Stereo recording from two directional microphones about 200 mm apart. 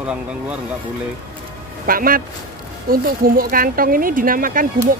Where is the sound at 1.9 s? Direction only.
45° right (ahead or behind).